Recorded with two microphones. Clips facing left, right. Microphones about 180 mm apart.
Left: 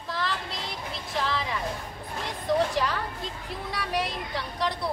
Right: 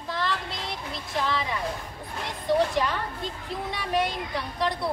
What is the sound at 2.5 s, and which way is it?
Speech, centre (ahead or behind).